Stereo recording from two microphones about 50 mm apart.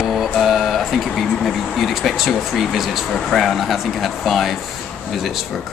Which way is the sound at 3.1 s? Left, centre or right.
Centre.